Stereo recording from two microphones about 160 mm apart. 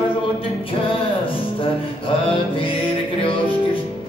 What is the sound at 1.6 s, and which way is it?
Music, 35° left (ahead or behind).